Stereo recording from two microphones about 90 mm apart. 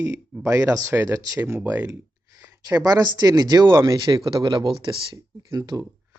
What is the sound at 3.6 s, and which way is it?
Speech, 30° right (ahead or behind).